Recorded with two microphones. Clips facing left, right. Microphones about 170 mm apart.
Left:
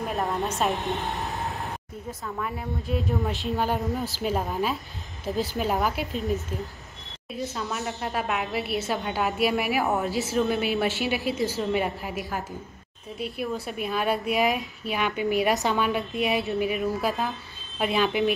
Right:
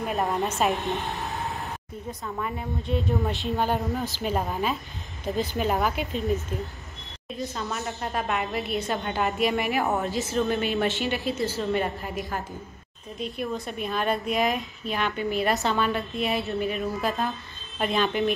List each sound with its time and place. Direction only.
0.0 s a woman's voice: centre (ahead or behind)
13.2 s a woman's voice: 5° left (ahead or behind)